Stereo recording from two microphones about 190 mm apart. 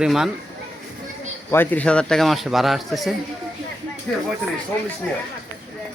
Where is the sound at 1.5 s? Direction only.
10° left (ahead or behind).